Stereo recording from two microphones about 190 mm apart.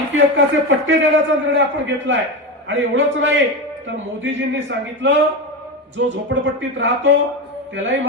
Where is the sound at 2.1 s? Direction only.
70° right (ahead or behind).